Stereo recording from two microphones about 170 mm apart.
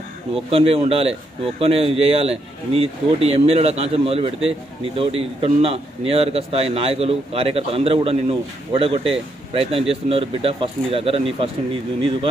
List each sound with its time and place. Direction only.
0.5 s speech: 35° right (ahead or behind)